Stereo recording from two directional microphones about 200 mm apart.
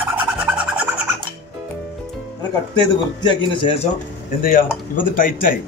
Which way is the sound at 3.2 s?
25° left (ahead or behind).